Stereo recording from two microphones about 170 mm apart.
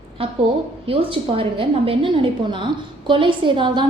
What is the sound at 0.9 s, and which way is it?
A woman's voice, 35° right (ahead or behind).